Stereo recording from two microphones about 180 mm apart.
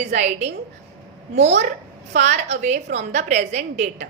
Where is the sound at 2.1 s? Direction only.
40° right (ahead or behind).